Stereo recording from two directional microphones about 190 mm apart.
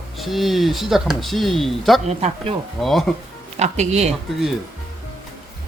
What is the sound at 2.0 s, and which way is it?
Speech, 35° right (ahead or behind).